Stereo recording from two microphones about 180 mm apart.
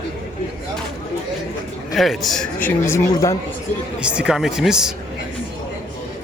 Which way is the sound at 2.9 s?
15° left (ahead or behind).